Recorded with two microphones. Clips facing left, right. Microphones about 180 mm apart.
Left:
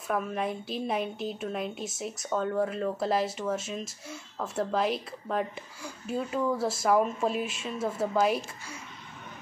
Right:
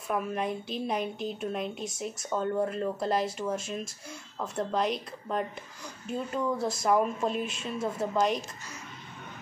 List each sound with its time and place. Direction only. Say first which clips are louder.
0.1 s a woman's voice: even; centre (ahead or behind)